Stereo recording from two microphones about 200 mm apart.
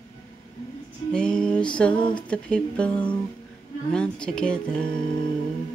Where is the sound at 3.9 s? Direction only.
5° left (ahead or behind).